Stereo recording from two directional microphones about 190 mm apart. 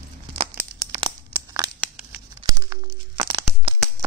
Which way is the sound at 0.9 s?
20° right (ahead or behind).